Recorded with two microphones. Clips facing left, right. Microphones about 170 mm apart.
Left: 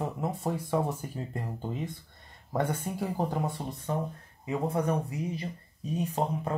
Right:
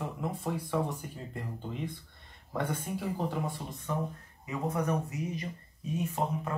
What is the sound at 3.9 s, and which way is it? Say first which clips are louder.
Speech: left 1 dB; 30° left (ahead or behind).